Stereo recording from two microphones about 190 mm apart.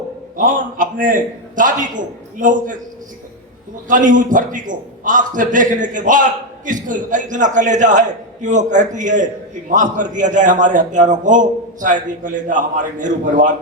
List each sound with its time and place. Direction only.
0.3 s a man's voice: 45° right (ahead or behind)
3.8 s a man's voice: 45° right (ahead or behind)